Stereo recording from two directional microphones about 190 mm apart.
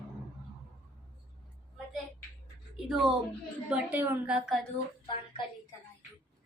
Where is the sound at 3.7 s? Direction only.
10° right (ahead or behind).